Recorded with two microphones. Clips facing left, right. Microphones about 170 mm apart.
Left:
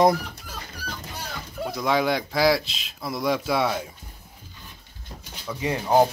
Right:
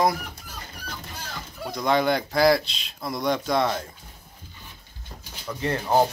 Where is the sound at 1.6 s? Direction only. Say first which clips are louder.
Right 1 dB; centre (ahead or behind).